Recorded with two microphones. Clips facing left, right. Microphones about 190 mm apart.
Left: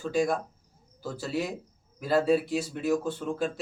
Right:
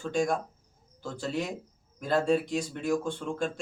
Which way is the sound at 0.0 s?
5° left (ahead or behind).